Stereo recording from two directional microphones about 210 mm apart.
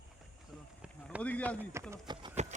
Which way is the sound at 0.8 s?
5° right (ahead or behind).